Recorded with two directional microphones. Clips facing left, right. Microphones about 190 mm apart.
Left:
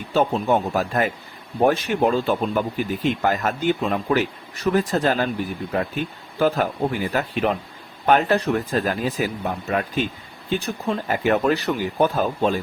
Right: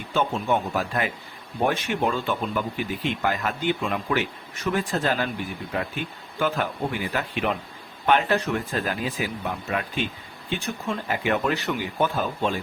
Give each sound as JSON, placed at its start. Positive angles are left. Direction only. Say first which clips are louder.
{"t": 0.1, "sound": "speech", "louder": "left 4 dB", "side_deg": 40}